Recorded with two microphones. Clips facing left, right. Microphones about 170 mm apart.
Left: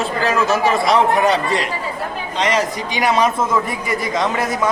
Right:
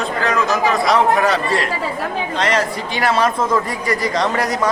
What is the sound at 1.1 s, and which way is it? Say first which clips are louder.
Speech: left 1 dB; 20° left (ahead or behind).